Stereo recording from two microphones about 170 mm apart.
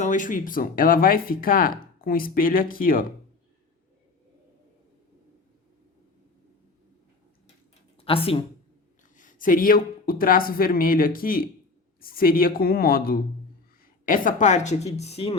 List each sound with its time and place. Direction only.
0.0 s speech: 50° left (ahead or behind)
8.0 s speech: 35° left (ahead or behind)
9.1 s a woman's voice: 50° left (ahead or behind)